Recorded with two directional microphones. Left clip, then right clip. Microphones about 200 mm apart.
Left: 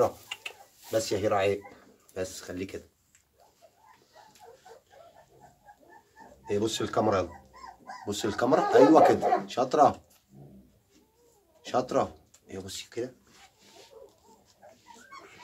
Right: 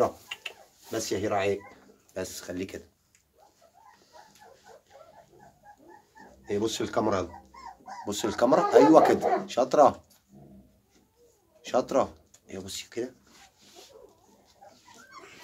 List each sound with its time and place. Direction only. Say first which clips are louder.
0.9 s speech: left 2 dB; 30° right (ahead or behind)
6.4 s speech: even; 30° right (ahead or behind)
11.6 s speech: right 2 dB; 35° right (ahead or behind)